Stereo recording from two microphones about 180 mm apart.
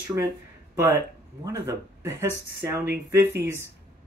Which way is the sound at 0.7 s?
15° right (ahead or behind).